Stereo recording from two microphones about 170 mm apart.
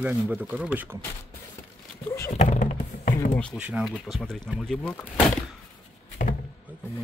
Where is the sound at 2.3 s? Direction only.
45° left (ahead or behind).